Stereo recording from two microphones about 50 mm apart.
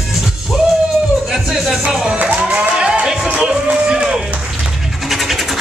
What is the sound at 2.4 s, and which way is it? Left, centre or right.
Music, centre.